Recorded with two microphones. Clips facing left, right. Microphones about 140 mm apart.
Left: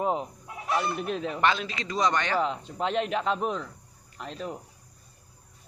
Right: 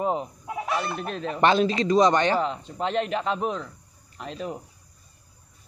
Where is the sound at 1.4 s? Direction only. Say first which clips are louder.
Right 9 dB; 30° right (ahead or behind).